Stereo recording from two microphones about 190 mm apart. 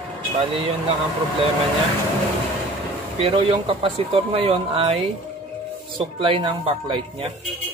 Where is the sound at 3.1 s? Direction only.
30° right (ahead or behind).